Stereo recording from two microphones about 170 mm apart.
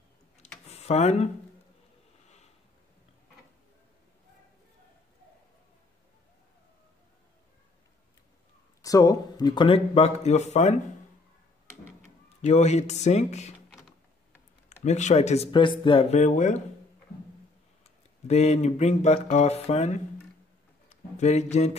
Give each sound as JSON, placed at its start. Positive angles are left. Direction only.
{"t": 0.7, "sound": "speech", "side_deg": 40}
{"t": 8.8, "sound": "speech", "side_deg": 20}
{"t": 12.3, "sound": "speech", "side_deg": 40}
{"t": 13.7, "sound": "a sound", "side_deg": 0}
{"t": 14.7, "sound": "speech", "side_deg": 40}
{"t": 18.2, "sound": "speech", "side_deg": 40}
{"t": 20.9, "sound": "a sound", "side_deg": 40}